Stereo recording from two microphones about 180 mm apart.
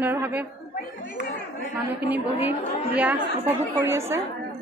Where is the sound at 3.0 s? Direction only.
10° right (ahead or behind).